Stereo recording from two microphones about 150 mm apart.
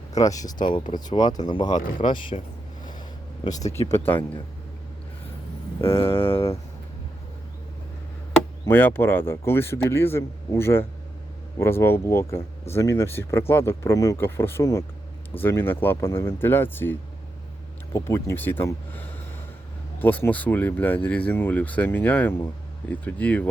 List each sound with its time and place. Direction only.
0.2 s speech: 25° left (ahead or behind)
3.9 s speech: 15° left (ahead or behind)
4.2 s speech: 30° left (ahead or behind)
6.2 s speech: 40° left (ahead or behind)
8.6 s speech: 15° left (ahead or behind)